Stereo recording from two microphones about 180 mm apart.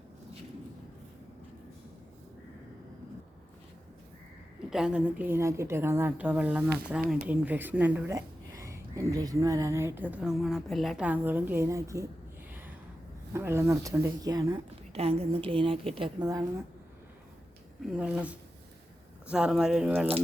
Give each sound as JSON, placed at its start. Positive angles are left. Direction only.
{"t": 4.7, "sound": "speech", "side_deg": -5}
{"t": 13.3, "sound": "speech", "side_deg": -15}
{"t": 14.9, "sound": "a woman's voice", "side_deg": -35}
{"t": 17.8, "sound": "speech", "side_deg": -5}